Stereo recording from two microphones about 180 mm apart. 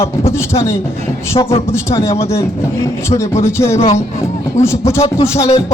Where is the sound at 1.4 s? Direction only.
30° left (ahead or behind).